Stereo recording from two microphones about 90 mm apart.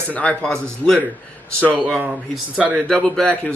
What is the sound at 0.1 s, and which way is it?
Speech, 15° left (ahead or behind).